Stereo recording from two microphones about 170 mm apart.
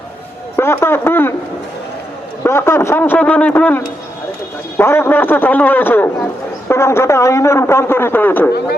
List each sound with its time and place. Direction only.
0.5 s a man's voice: 15° left (ahead or behind)
2.4 s a man's voice: 15° left (ahead or behind)